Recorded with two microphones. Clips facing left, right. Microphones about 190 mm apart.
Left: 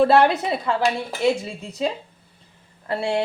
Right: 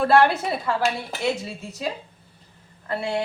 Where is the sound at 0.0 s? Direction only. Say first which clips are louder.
Left 2 dB; 25° left (ahead or behind).